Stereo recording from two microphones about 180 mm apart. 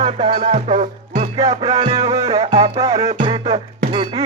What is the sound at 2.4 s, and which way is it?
Music, 35° right (ahead or behind).